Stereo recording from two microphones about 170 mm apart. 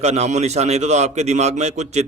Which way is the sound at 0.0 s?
40° right (ahead or behind).